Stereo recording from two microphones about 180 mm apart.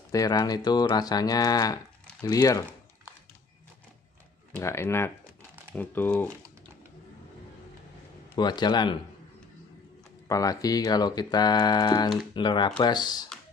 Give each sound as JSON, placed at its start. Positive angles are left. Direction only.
{"t": 0.1, "sound": "speech", "side_deg": 20}
{"t": 4.6, "sound": "speech", "side_deg": 15}
{"t": 8.4, "sound": "speech", "side_deg": 25}
{"t": 10.2, "sound": "speech", "side_deg": 20}